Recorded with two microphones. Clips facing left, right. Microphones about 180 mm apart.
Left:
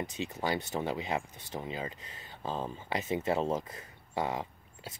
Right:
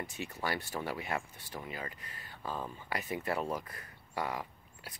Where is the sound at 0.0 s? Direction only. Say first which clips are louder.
Left 4 dB; 20° left (ahead or behind).